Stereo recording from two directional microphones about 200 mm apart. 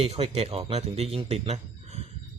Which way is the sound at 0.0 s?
30° right (ahead or behind).